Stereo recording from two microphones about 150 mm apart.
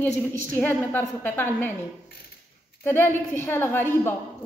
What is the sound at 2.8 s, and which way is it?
A woman's voice, 15° left (ahead or behind).